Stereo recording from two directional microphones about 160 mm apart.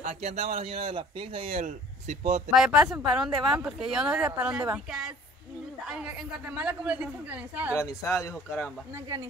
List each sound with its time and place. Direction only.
0.0 s a man's voice: 45° right (ahead or behind)
2.5 s a man's voice: 5° right (ahead or behind)
8.0 s speech: 15° left (ahead or behind)